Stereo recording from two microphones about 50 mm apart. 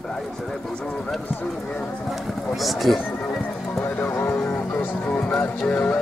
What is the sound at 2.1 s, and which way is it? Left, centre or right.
Speech, centre.